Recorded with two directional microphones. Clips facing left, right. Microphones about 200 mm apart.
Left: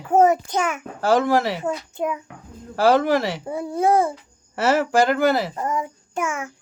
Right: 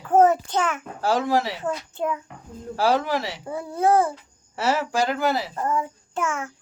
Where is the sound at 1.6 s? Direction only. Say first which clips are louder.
Left 2 dB; 15° left (ahead or behind).